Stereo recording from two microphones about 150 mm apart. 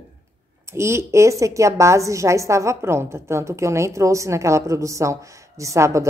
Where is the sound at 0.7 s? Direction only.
20° right (ahead or behind).